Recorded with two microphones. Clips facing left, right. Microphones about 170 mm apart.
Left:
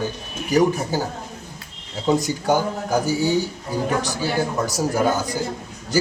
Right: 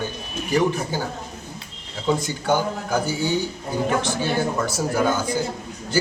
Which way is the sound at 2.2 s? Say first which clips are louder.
Left 2 dB; 40° left (ahead or behind).